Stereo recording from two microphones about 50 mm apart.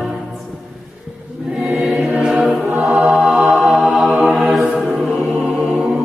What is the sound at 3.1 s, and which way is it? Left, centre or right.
Mantra, centre.